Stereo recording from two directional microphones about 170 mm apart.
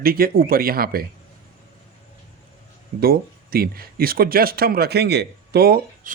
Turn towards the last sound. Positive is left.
turn(degrees=-60)  # may be behind; listen again after turning